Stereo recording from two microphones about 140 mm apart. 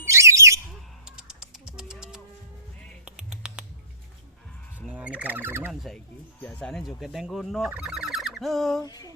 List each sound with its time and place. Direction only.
0.1 s bird: 20° right (ahead or behind)
1.0 s crow: 5° right (ahead or behind)
3.0 s music: 5° right (ahead or behind)
4.9 s speech: 10° right (ahead or behind)
6.4 s speech: 5° left (ahead or behind)
8.8 s a sound: 25° left (ahead or behind)